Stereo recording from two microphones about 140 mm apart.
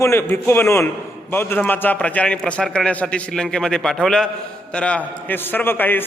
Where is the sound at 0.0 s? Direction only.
20° left (ahead or behind).